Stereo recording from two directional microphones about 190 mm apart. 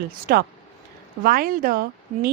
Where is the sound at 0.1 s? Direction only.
50° right (ahead or behind).